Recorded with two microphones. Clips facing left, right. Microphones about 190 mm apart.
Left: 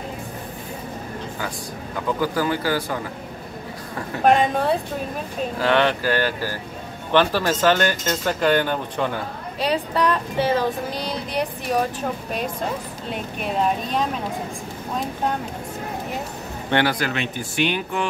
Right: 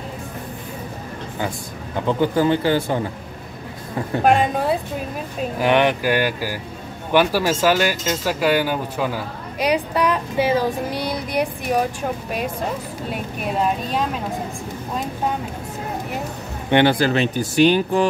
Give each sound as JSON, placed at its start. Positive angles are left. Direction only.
{"t": 2.0, "sound": "speech", "side_deg": -25}
{"t": 5.6, "sound": "speech", "side_deg": -15}
{"t": 16.7, "sound": "speech", "side_deg": -25}